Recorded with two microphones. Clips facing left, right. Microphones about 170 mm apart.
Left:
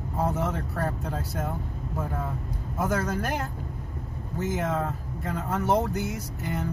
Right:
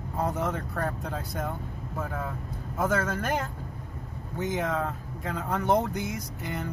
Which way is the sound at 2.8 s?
10° left (ahead or behind).